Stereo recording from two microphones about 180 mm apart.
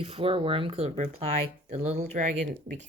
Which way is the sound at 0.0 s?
30° right (ahead or behind).